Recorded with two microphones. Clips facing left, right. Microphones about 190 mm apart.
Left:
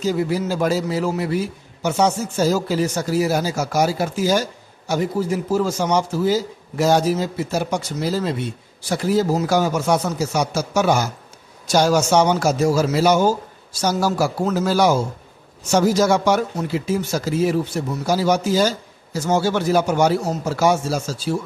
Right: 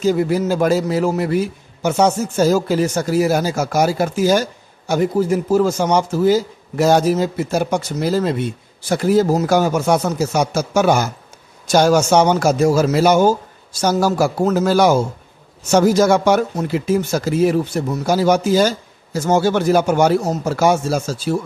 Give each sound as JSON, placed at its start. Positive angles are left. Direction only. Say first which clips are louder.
{"t": 0.0, "sound": "a man's voice", "louder": "right 4 dB", "side_deg": -50}